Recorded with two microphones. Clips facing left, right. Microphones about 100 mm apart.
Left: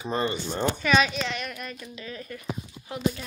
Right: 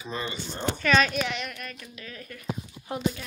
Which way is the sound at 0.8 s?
10° left (ahead or behind).